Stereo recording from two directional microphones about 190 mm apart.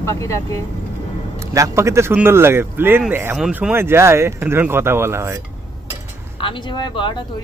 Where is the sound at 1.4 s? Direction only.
15° right (ahead or behind).